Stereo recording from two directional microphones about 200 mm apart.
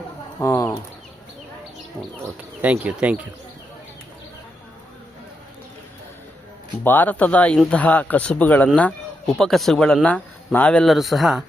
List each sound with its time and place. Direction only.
0.3 s speech: 15° left (ahead or behind)
2.6 s speech: 10° right (ahead or behind)
6.8 s speech: 10° left (ahead or behind)